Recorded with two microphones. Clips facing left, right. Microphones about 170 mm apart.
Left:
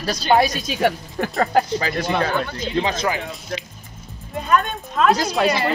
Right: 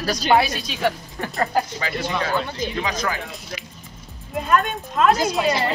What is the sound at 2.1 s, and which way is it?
Speech, 55° left (ahead or behind).